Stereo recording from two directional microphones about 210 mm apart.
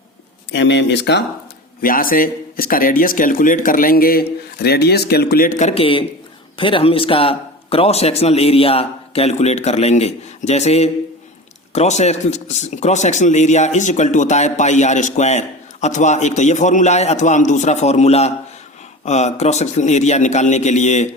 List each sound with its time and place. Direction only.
0.5 s speech: 60° left (ahead or behind)
1.8 s a man's voice: 40° left (ahead or behind)